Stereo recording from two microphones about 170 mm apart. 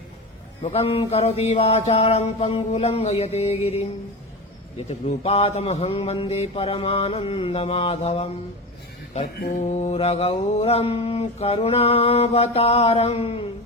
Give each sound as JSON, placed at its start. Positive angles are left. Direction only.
{"t": 0.6, "sound": "mantra", "side_deg": 35}
{"t": 4.9, "sound": "mantra", "side_deg": 40}
{"t": 9.5, "sound": "mantra", "side_deg": 45}